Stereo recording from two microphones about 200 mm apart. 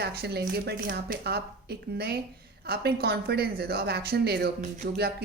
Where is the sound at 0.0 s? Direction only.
55° right (ahead or behind).